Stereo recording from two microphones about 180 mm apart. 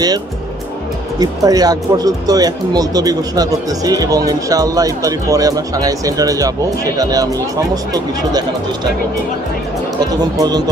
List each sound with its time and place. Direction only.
1.2 s speech: 20° right (ahead or behind)